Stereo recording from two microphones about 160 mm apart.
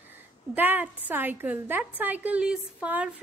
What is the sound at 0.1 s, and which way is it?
A woman's voice, 10° right (ahead or behind).